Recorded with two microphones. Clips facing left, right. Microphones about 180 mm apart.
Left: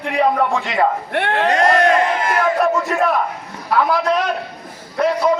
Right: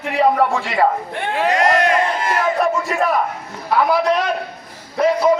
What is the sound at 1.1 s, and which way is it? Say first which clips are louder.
Speech: left 5 dB; 75° left (ahead or behind).